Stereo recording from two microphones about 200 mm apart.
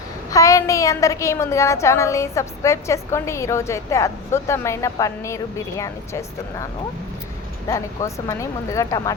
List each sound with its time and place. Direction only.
0.3 s a woman's voice: 15° left (ahead or behind)
7.7 s a woman's voice: 15° left (ahead or behind)